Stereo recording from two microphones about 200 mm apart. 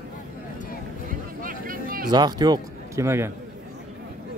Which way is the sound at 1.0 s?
45° right (ahead or behind).